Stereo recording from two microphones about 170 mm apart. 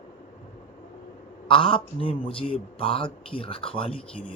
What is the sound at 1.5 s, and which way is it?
A man's voice, 30° left (ahead or behind).